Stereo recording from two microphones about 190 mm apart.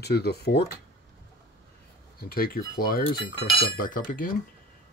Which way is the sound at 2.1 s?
50° left (ahead or behind).